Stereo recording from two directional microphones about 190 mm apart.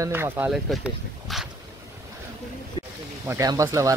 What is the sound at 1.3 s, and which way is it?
Boat, centre (ahead or behind).